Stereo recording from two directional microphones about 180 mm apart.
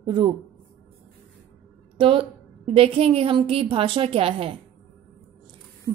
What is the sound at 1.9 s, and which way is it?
A woman's voice, 30° right (ahead or behind).